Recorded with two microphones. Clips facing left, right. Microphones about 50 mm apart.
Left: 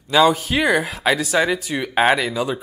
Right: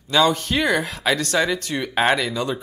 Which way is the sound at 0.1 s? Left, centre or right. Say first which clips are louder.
Left 3 dB; centre.